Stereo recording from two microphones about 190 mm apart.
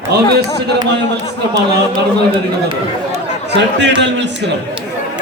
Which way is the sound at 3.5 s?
65° right (ahead or behind).